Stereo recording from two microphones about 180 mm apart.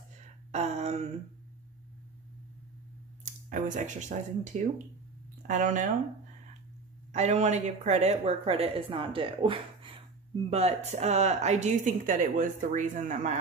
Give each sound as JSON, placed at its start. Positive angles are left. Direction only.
{"t": 0.2, "sound": "a sound", "side_deg": -40}
{"t": 3.4, "sound": "speech", "side_deg": -45}
{"t": 7.1, "sound": "speech", "side_deg": -40}